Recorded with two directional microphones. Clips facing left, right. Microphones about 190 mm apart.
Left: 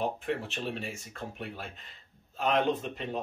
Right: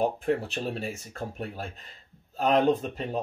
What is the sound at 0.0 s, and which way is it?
Speech, 40° right (ahead or behind).